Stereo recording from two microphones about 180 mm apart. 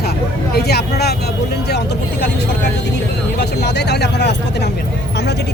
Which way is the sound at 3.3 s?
65° left (ahead or behind).